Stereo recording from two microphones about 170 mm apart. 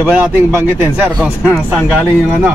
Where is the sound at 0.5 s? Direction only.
10° right (ahead or behind).